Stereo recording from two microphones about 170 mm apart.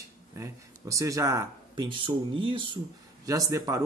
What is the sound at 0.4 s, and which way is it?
Speech, 20° right (ahead or behind).